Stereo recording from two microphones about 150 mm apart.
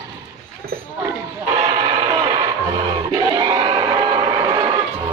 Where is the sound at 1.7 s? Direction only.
35° right (ahead or behind).